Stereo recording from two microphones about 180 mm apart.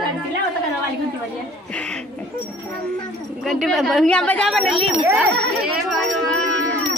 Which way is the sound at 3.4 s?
Centre (ahead or behind).